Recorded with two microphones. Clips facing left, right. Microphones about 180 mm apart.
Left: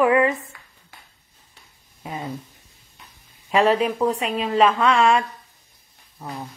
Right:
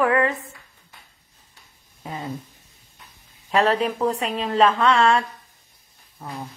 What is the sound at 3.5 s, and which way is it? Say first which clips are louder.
Speech: left 2 dB; 10° left (ahead or behind).